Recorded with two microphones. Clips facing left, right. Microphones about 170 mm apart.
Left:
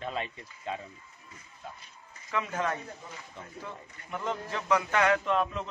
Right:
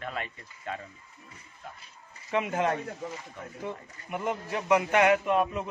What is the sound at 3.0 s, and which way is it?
Speech, 85° right.